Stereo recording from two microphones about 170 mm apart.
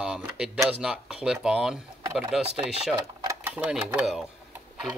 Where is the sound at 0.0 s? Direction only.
5° right (ahead or behind).